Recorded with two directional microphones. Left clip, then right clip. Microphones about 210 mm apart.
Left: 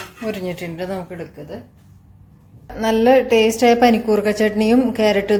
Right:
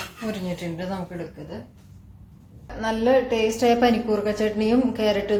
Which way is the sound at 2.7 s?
40° left (ahead or behind).